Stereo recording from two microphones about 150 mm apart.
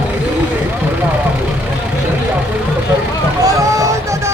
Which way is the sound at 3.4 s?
20° right (ahead or behind).